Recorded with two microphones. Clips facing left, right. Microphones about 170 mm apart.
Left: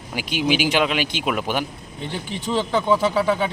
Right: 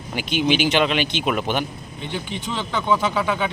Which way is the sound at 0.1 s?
10° left (ahead or behind).